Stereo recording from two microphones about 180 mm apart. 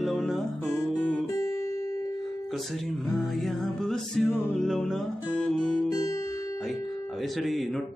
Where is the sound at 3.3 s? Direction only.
Centre (ahead or behind).